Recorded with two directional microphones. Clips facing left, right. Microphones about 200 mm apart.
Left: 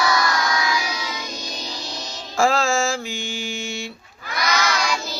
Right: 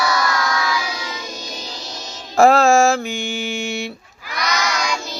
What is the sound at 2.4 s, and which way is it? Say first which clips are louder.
Music: right 7 dB; 60° right (ahead or behind).